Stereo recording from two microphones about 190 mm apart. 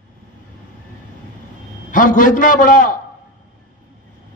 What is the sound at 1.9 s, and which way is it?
Speech, 45° left (ahead or behind).